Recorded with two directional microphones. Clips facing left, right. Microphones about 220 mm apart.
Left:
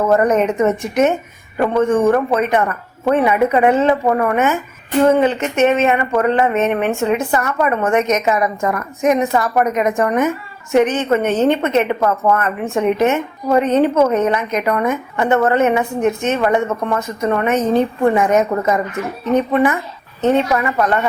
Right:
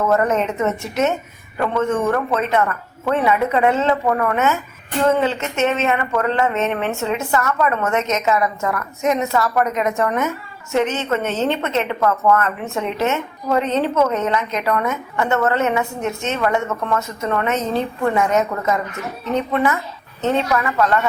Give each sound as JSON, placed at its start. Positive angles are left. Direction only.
{"t": 0.1, "sound": "a woman's voice", "side_deg": 15}